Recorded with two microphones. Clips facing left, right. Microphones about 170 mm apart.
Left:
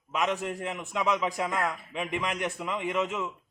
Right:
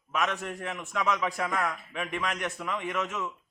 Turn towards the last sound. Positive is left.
turn(degrees=15)  # may be behind; listen again after turning